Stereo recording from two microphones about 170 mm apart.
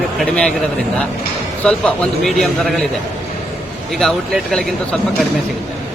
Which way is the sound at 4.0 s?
Centre (ahead or behind).